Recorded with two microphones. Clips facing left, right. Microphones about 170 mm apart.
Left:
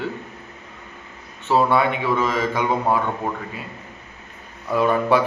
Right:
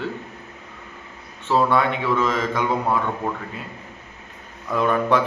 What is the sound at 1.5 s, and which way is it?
A man's voice, 10° left (ahead or behind).